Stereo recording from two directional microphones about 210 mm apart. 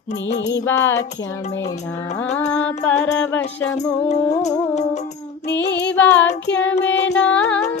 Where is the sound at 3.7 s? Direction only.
30° left (ahead or behind).